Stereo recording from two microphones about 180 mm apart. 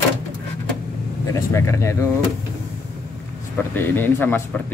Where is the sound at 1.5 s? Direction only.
15° left (ahead or behind).